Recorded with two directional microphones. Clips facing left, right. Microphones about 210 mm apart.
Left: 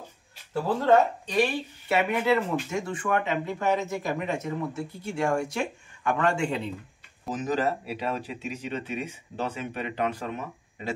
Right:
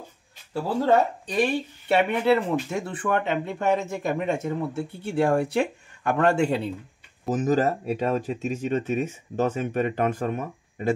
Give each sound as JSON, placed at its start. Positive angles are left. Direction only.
{"t": 1.4, "sound": "speech", "side_deg": -30}